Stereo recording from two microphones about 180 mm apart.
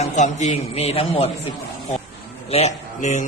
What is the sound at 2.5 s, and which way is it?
Speech, 35° left (ahead or behind).